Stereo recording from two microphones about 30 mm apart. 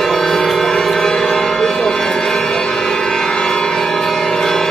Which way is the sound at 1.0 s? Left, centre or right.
Centre.